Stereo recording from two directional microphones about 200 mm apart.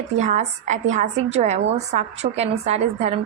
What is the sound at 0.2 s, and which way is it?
A woman's voice, 35° right (ahead or behind).